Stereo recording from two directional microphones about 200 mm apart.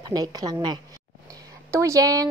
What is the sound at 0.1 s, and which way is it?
A woman's voice, 20° right (ahead or behind).